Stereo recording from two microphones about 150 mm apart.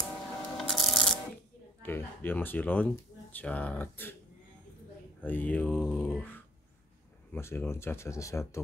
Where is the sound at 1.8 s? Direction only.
15° left (ahead or behind).